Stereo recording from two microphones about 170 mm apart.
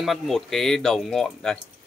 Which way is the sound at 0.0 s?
Centre (ahead or behind).